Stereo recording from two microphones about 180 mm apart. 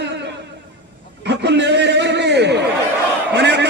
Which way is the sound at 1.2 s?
70° right (ahead or behind).